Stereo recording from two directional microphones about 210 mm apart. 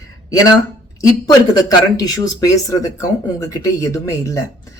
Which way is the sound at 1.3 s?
20° left (ahead or behind).